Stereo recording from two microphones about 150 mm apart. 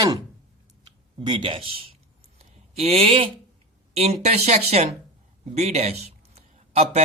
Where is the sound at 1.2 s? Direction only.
30° right (ahead or behind).